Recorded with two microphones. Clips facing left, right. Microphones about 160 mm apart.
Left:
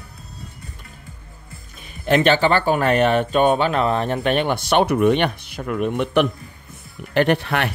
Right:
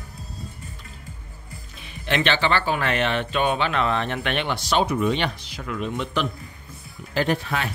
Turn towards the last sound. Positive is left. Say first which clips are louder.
# left 5 dB
turn(degrees=65)  # may be behind; listen again after turning